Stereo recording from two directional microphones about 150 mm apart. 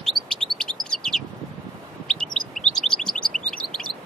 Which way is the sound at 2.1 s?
5° left (ahead or behind).